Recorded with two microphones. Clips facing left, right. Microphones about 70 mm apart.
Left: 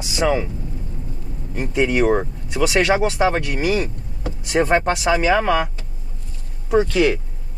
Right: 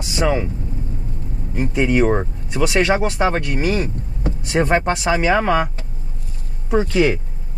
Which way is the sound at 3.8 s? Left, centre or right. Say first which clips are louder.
Right 4 dB; right.